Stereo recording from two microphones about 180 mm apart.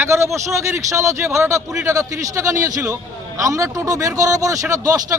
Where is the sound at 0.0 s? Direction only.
15° right (ahead or behind).